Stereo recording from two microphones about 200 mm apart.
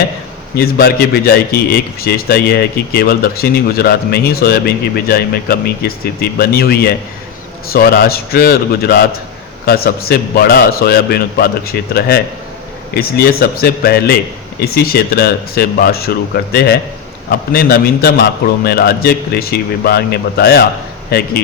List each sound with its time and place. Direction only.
0.5 s a man's voice: 50° left (ahead or behind)